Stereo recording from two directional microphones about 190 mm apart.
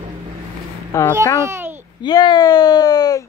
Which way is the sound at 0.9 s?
15° left (ahead or behind).